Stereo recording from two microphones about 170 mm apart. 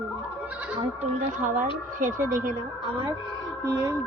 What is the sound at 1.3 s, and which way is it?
A woman's voice, 50° right (ahead or behind).